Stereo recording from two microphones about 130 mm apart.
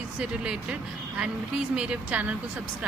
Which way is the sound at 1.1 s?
10° right (ahead or behind).